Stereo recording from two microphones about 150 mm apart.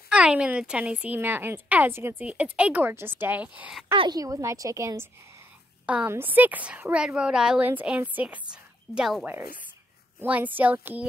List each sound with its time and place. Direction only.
0.1 s a woman's voice: 5° right (ahead or behind)
3.9 s a woman's voice: 35° right (ahead or behind)
4.2 s a woman's voice: 20° right (ahead or behind)